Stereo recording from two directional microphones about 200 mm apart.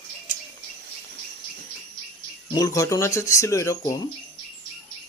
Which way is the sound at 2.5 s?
20° left (ahead or behind).